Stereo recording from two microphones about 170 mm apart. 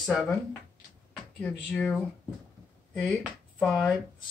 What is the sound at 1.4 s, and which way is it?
Speech, 5° left (ahead or behind).